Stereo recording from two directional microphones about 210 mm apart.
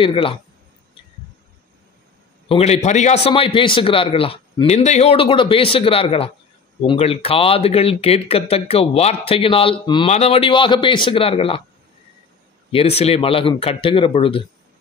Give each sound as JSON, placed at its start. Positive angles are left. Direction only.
{"t": 0.0, "sound": "speech", "side_deg": 25}
{"t": 2.4, "sound": "speech", "side_deg": 30}
{"t": 12.7, "sound": "speech", "side_deg": 30}